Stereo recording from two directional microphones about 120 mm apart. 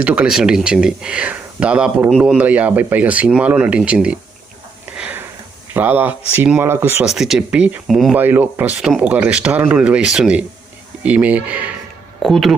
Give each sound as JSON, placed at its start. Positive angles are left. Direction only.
{"t": 0.0, "sound": "speech", "side_deg": -10}
{"t": 4.9, "sound": "a sound", "side_deg": -15}
{"t": 5.7, "sound": "speech", "side_deg": -15}
{"t": 7.0, "sound": "speech", "side_deg": -5}
{"t": 8.1, "sound": "speech", "side_deg": -15}
{"t": 12.2, "sound": "speech", "side_deg": 0}